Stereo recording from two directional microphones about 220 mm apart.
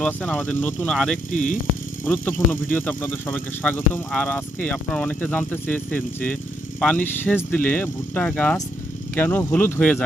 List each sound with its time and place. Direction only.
0.0 s speech: 5° left (ahead or behind)
1.3 s speech: 35° left (ahead or behind)
2.0 s speech: 10° left (ahead or behind)